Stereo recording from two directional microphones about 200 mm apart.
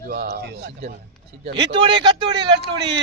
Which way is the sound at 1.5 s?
25° right (ahead or behind).